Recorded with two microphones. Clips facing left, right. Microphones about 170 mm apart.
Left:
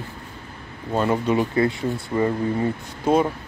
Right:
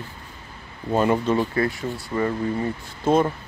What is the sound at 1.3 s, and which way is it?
Speech, 20° left (ahead or behind).